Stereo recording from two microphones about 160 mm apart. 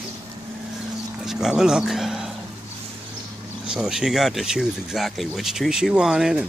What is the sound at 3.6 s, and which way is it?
Speech, 5° right (ahead or behind).